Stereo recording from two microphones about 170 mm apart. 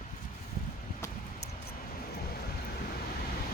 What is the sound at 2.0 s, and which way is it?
Vehicle, 60° left (ahead or behind).